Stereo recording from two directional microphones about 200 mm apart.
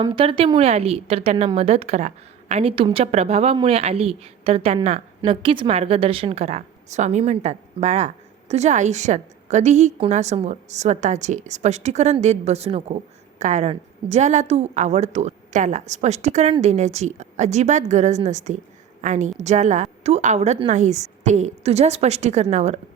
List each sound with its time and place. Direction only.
0.0 s a woman's voice: 25° right (ahead or behind)